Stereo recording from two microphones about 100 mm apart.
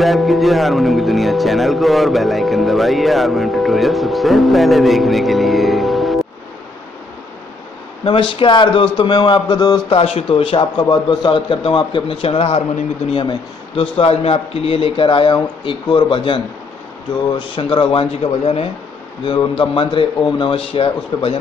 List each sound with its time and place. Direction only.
0.0 s speech: centre (ahead or behind)
8.0 s a man's voice: 55° left (ahead or behind)
9.1 s speech: 45° left (ahead or behind)
9.8 s a man's voice: 70° left (ahead or behind); by 12.6 s 90° left
13.1 s a man's voice: 60° left (ahead or behind)
17.4 s a man's voice: 55° left (ahead or behind); by 18.7 s 75° left (ahead or behind)
19.2 s a man's voice: 55° left (ahead or behind)
20.5 s a man's voice: 65° left (ahead or behind)